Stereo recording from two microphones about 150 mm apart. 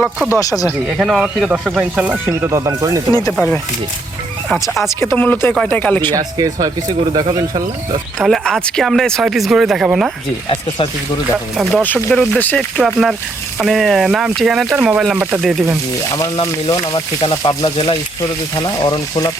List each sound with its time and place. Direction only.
0.3 s speech: 25° left (ahead or behind)
0.9 s speech: centre (ahead or behind); by 3.0 s 20° right (ahead or behind)
4.4 s speech: centre (ahead or behind)
4.9 s speech: 15° left (ahead or behind)
6.1 s speech: 25° right (ahead or behind)
8.2 s speech: centre (ahead or behind)
11.5 s speech: centre (ahead or behind)
16.1 s speech: 25° left (ahead or behind)
18.2 s speech: 25° left (ahead or behind)